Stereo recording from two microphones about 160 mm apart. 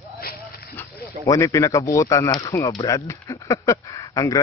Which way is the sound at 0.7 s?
10° left (ahead or behind).